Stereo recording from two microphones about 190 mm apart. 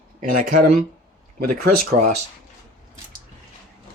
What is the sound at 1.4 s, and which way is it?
Speech, 50° right (ahead or behind).